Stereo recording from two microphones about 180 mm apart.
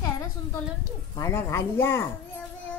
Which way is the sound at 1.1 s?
15° left (ahead or behind).